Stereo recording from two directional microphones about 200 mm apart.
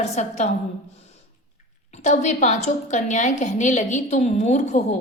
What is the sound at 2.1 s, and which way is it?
A woman's voice, 35° left (ahead or behind).